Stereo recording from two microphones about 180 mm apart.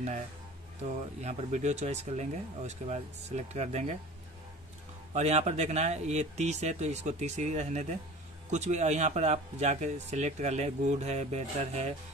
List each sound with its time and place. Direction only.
1.2 s speech: 40° right (ahead or behind)
5.1 s speech: 40° right (ahead or behind)